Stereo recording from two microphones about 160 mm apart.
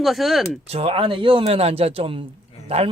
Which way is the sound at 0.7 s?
40° right (ahead or behind).